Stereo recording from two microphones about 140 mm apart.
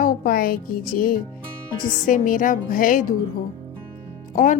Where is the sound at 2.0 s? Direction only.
75° left (ahead or behind).